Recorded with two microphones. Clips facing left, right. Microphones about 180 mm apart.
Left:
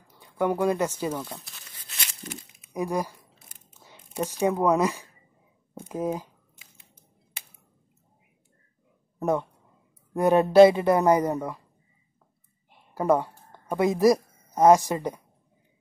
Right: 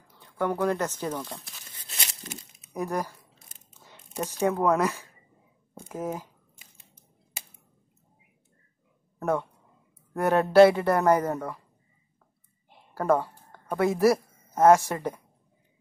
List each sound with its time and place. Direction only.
0.1 s speech: 10° left (ahead or behind)
2.7 s speech: 10° left (ahead or behind)
9.2 s speech: 15° left (ahead or behind)
12.9 s a woman's voice: 15° left (ahead or behind)